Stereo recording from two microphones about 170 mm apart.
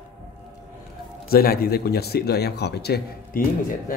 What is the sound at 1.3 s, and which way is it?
A man's voice, 60° left (ahead or behind).